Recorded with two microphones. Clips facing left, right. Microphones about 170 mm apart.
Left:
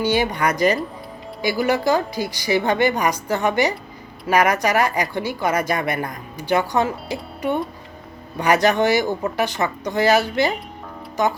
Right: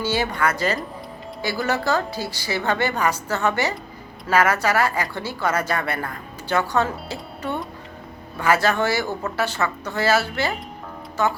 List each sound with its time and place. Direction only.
0.0 s speech: 15° left (ahead or behind)